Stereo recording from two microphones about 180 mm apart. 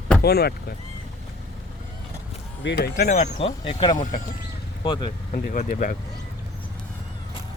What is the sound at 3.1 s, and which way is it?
Speech, 35° left (ahead or behind).